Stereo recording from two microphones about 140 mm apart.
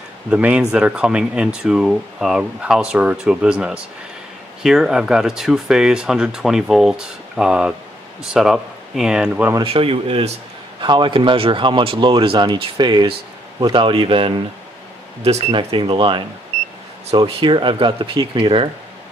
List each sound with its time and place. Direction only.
0.3 s speech: 10° right (ahead or behind)
9.6 s speech: 40° right (ahead or behind)
15.2 s speech: 50° right (ahead or behind)
15.5 s speech: 40° right (ahead or behind)